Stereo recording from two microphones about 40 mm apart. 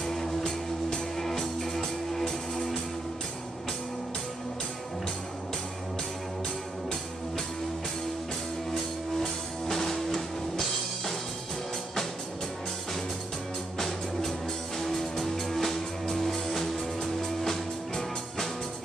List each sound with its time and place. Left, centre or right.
0.0 s music: centre
9.2 s music: centre
13.7 s music: centre